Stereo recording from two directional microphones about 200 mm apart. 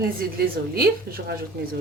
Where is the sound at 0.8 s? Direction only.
50° right (ahead or behind).